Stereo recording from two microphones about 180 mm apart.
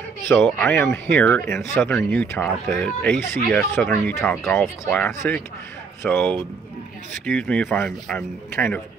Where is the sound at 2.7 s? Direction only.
Centre (ahead or behind).